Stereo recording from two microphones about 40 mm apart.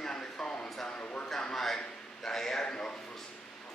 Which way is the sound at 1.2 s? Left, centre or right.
Centre.